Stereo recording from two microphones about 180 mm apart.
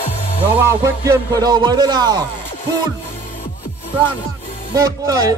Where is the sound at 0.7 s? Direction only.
15° right (ahead or behind).